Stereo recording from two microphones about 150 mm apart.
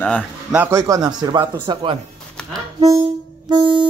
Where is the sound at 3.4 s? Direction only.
35° right (ahead or behind).